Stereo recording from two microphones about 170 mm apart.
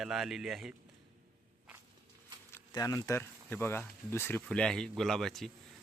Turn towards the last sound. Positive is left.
turn(degrees=0)  # may be behind; listen again after turning